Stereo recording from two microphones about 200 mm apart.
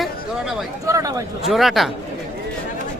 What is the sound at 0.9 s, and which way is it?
Speech, 15° right (ahead or behind).